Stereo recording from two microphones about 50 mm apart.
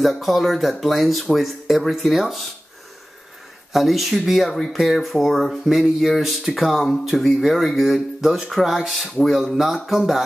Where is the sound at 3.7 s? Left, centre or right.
Centre.